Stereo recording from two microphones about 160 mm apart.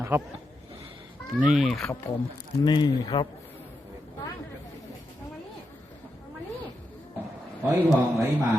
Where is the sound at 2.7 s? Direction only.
25° left (ahead or behind).